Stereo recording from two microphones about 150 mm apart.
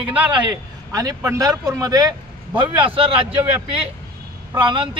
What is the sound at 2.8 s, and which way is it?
Speech, 40° right (ahead or behind).